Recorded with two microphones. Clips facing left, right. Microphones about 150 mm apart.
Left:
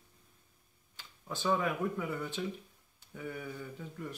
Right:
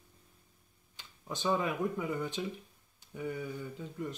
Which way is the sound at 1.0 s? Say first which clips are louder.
Right 1 dB; 20° right (ahead or behind).